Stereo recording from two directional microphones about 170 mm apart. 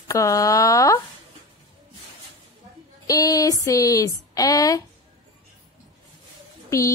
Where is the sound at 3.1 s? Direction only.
20° left (ahead or behind).